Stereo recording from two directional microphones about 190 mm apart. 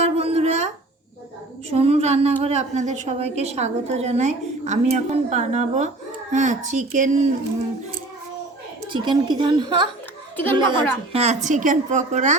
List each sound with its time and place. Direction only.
0.0 s a sound: 30° right (ahead or behind)
1.7 s a woman's voice: 30° right (ahead or behind)
8.9 s a woman's voice: 25° right (ahead or behind); by 12.4 s 40° right (ahead or behind)